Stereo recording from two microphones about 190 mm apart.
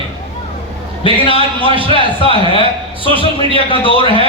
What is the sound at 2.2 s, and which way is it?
A man's voice, 30° left (ahead or behind).